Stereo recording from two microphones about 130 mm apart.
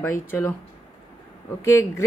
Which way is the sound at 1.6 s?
25° left (ahead or behind).